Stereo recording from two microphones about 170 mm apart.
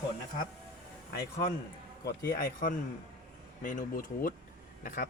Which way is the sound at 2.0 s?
60° left (ahead or behind).